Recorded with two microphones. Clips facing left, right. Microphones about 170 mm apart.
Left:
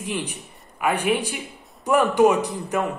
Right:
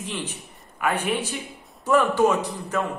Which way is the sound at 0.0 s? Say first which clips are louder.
Left 3 dB; 10° left (ahead or behind).